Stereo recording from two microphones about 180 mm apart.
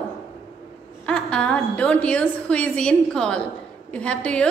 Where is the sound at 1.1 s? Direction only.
5° left (ahead or behind).